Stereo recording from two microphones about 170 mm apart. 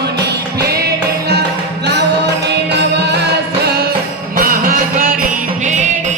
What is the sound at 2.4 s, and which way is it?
Music, 85° right.